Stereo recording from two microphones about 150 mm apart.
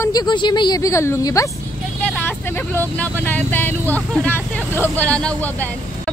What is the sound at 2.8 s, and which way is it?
Speech, 15° left (ahead or behind).